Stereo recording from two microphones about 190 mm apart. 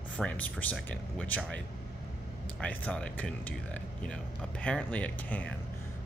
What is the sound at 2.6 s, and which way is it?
Speech, 10° left (ahead or behind).